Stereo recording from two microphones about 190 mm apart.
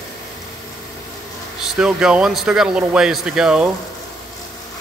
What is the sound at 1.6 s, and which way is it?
Speech, 5° right (ahead or behind).